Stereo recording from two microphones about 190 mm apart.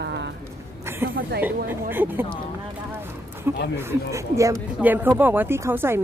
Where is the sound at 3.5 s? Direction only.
10° right (ahead or behind).